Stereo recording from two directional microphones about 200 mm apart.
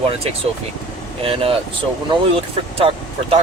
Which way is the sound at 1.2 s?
25° right (ahead or behind).